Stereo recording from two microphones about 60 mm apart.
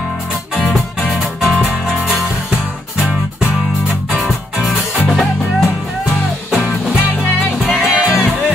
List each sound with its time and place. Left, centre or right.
0.7 s music: centre
3.1 s music: right
4.1 s music: centre